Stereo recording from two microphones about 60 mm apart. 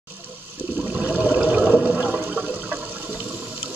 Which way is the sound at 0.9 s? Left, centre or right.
Centre.